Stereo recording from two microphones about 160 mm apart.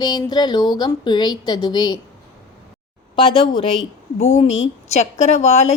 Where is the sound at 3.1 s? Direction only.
35° left (ahead or behind).